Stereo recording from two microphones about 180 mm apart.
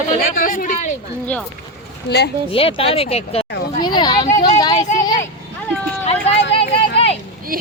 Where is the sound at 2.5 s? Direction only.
30° left (ahead or behind).